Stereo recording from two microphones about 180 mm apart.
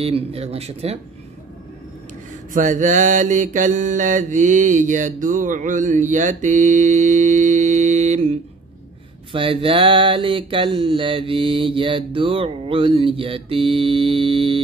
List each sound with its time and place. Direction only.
0.0 s speech: 35° right (ahead or behind)
2.5 s mantra: 45° right (ahead or behind)
9.3 s mantra: 30° right (ahead or behind)